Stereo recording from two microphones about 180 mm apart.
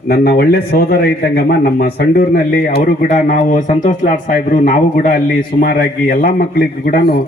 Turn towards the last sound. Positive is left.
turn(degrees=55)  # may be behind; listen again after turning